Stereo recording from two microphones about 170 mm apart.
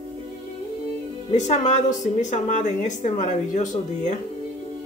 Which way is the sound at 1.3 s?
45° left (ahead or behind).